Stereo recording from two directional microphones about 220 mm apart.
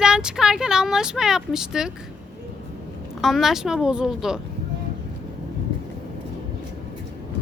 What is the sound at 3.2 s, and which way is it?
Speech, centre (ahead or behind).